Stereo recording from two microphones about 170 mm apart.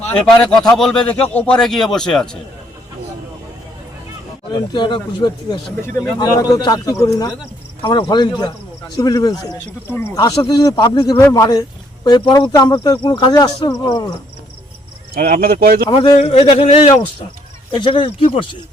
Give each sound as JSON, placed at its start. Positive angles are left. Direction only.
{"t": 0.2, "sound": "a man's voice", "side_deg": 5}
{"t": 4.5, "sound": "speech", "side_deg": 25}
{"t": 9.9, "sound": "speech", "side_deg": 10}
{"t": 10.2, "sound": "speech", "side_deg": 25}
{"t": 11.2, "sound": "speech", "side_deg": 20}
{"t": 15.1, "sound": "speech", "side_deg": -60}
{"t": 15.9, "sound": "a man's voice", "side_deg": 30}